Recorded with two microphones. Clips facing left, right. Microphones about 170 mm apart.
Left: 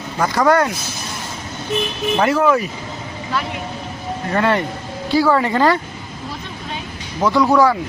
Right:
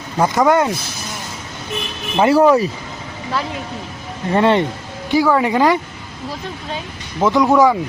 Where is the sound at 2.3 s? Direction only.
35° right (ahead or behind).